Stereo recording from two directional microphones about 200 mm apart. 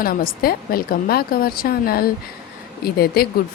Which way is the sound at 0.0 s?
45° left (ahead or behind).